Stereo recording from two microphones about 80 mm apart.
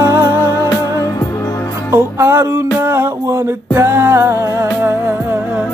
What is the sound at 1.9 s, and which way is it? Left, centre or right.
Music, right.